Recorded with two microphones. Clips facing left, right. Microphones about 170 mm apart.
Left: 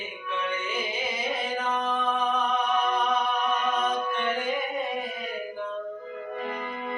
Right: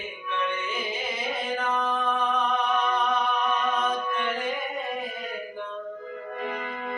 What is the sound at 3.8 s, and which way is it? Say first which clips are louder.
Mantra: even; centre (ahead or behind).